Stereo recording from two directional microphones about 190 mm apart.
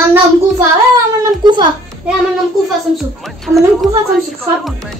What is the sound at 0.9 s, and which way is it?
Speech, 20° right (ahead or behind).